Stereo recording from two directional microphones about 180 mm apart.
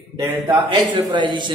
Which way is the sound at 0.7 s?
25° right (ahead or behind).